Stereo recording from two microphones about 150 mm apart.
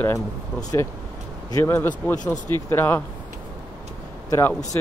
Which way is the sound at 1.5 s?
15° left (ahead or behind).